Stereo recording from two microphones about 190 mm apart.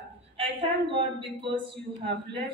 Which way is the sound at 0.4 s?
25° right (ahead or behind).